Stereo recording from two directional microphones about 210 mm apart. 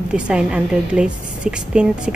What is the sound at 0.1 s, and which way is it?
A woman's voice, 5° right (ahead or behind).